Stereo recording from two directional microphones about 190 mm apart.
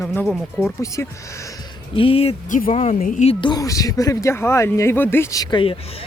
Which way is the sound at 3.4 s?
20° left (ahead or behind).